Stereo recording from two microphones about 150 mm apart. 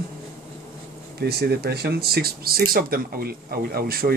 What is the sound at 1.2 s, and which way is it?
Speech, 90° right.